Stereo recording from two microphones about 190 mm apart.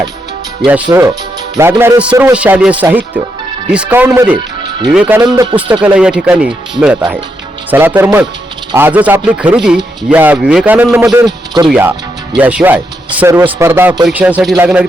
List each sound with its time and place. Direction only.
0.9 s a man's voice: 20° right (ahead or behind)
5.2 s a man's voice: 20° right (ahead or behind)
5.8 s a man's voice: 5° right (ahead or behind); by 11.7 s 20° right (ahead or behind)
11.7 s a man's voice: 10° right (ahead or behind)